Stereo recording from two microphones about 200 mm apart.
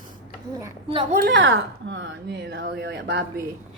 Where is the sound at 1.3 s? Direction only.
70° right (ahead or behind).